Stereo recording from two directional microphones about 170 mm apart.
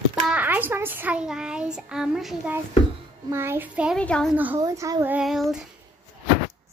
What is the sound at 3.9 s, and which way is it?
Speech, 5° left (ahead or behind).